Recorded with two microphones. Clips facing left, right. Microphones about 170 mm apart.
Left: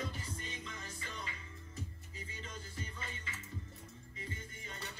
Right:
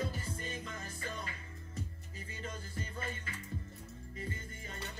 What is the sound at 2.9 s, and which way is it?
Music, 50° right (ahead or behind).